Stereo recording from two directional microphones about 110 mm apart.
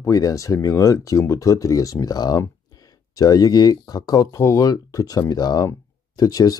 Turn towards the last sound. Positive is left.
turn(degrees=35)  # may be behind; listen again after turning